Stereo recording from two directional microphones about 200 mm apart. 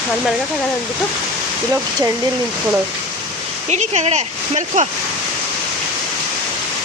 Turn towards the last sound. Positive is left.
turn(degrees=-35)  # may be behind; listen again after turning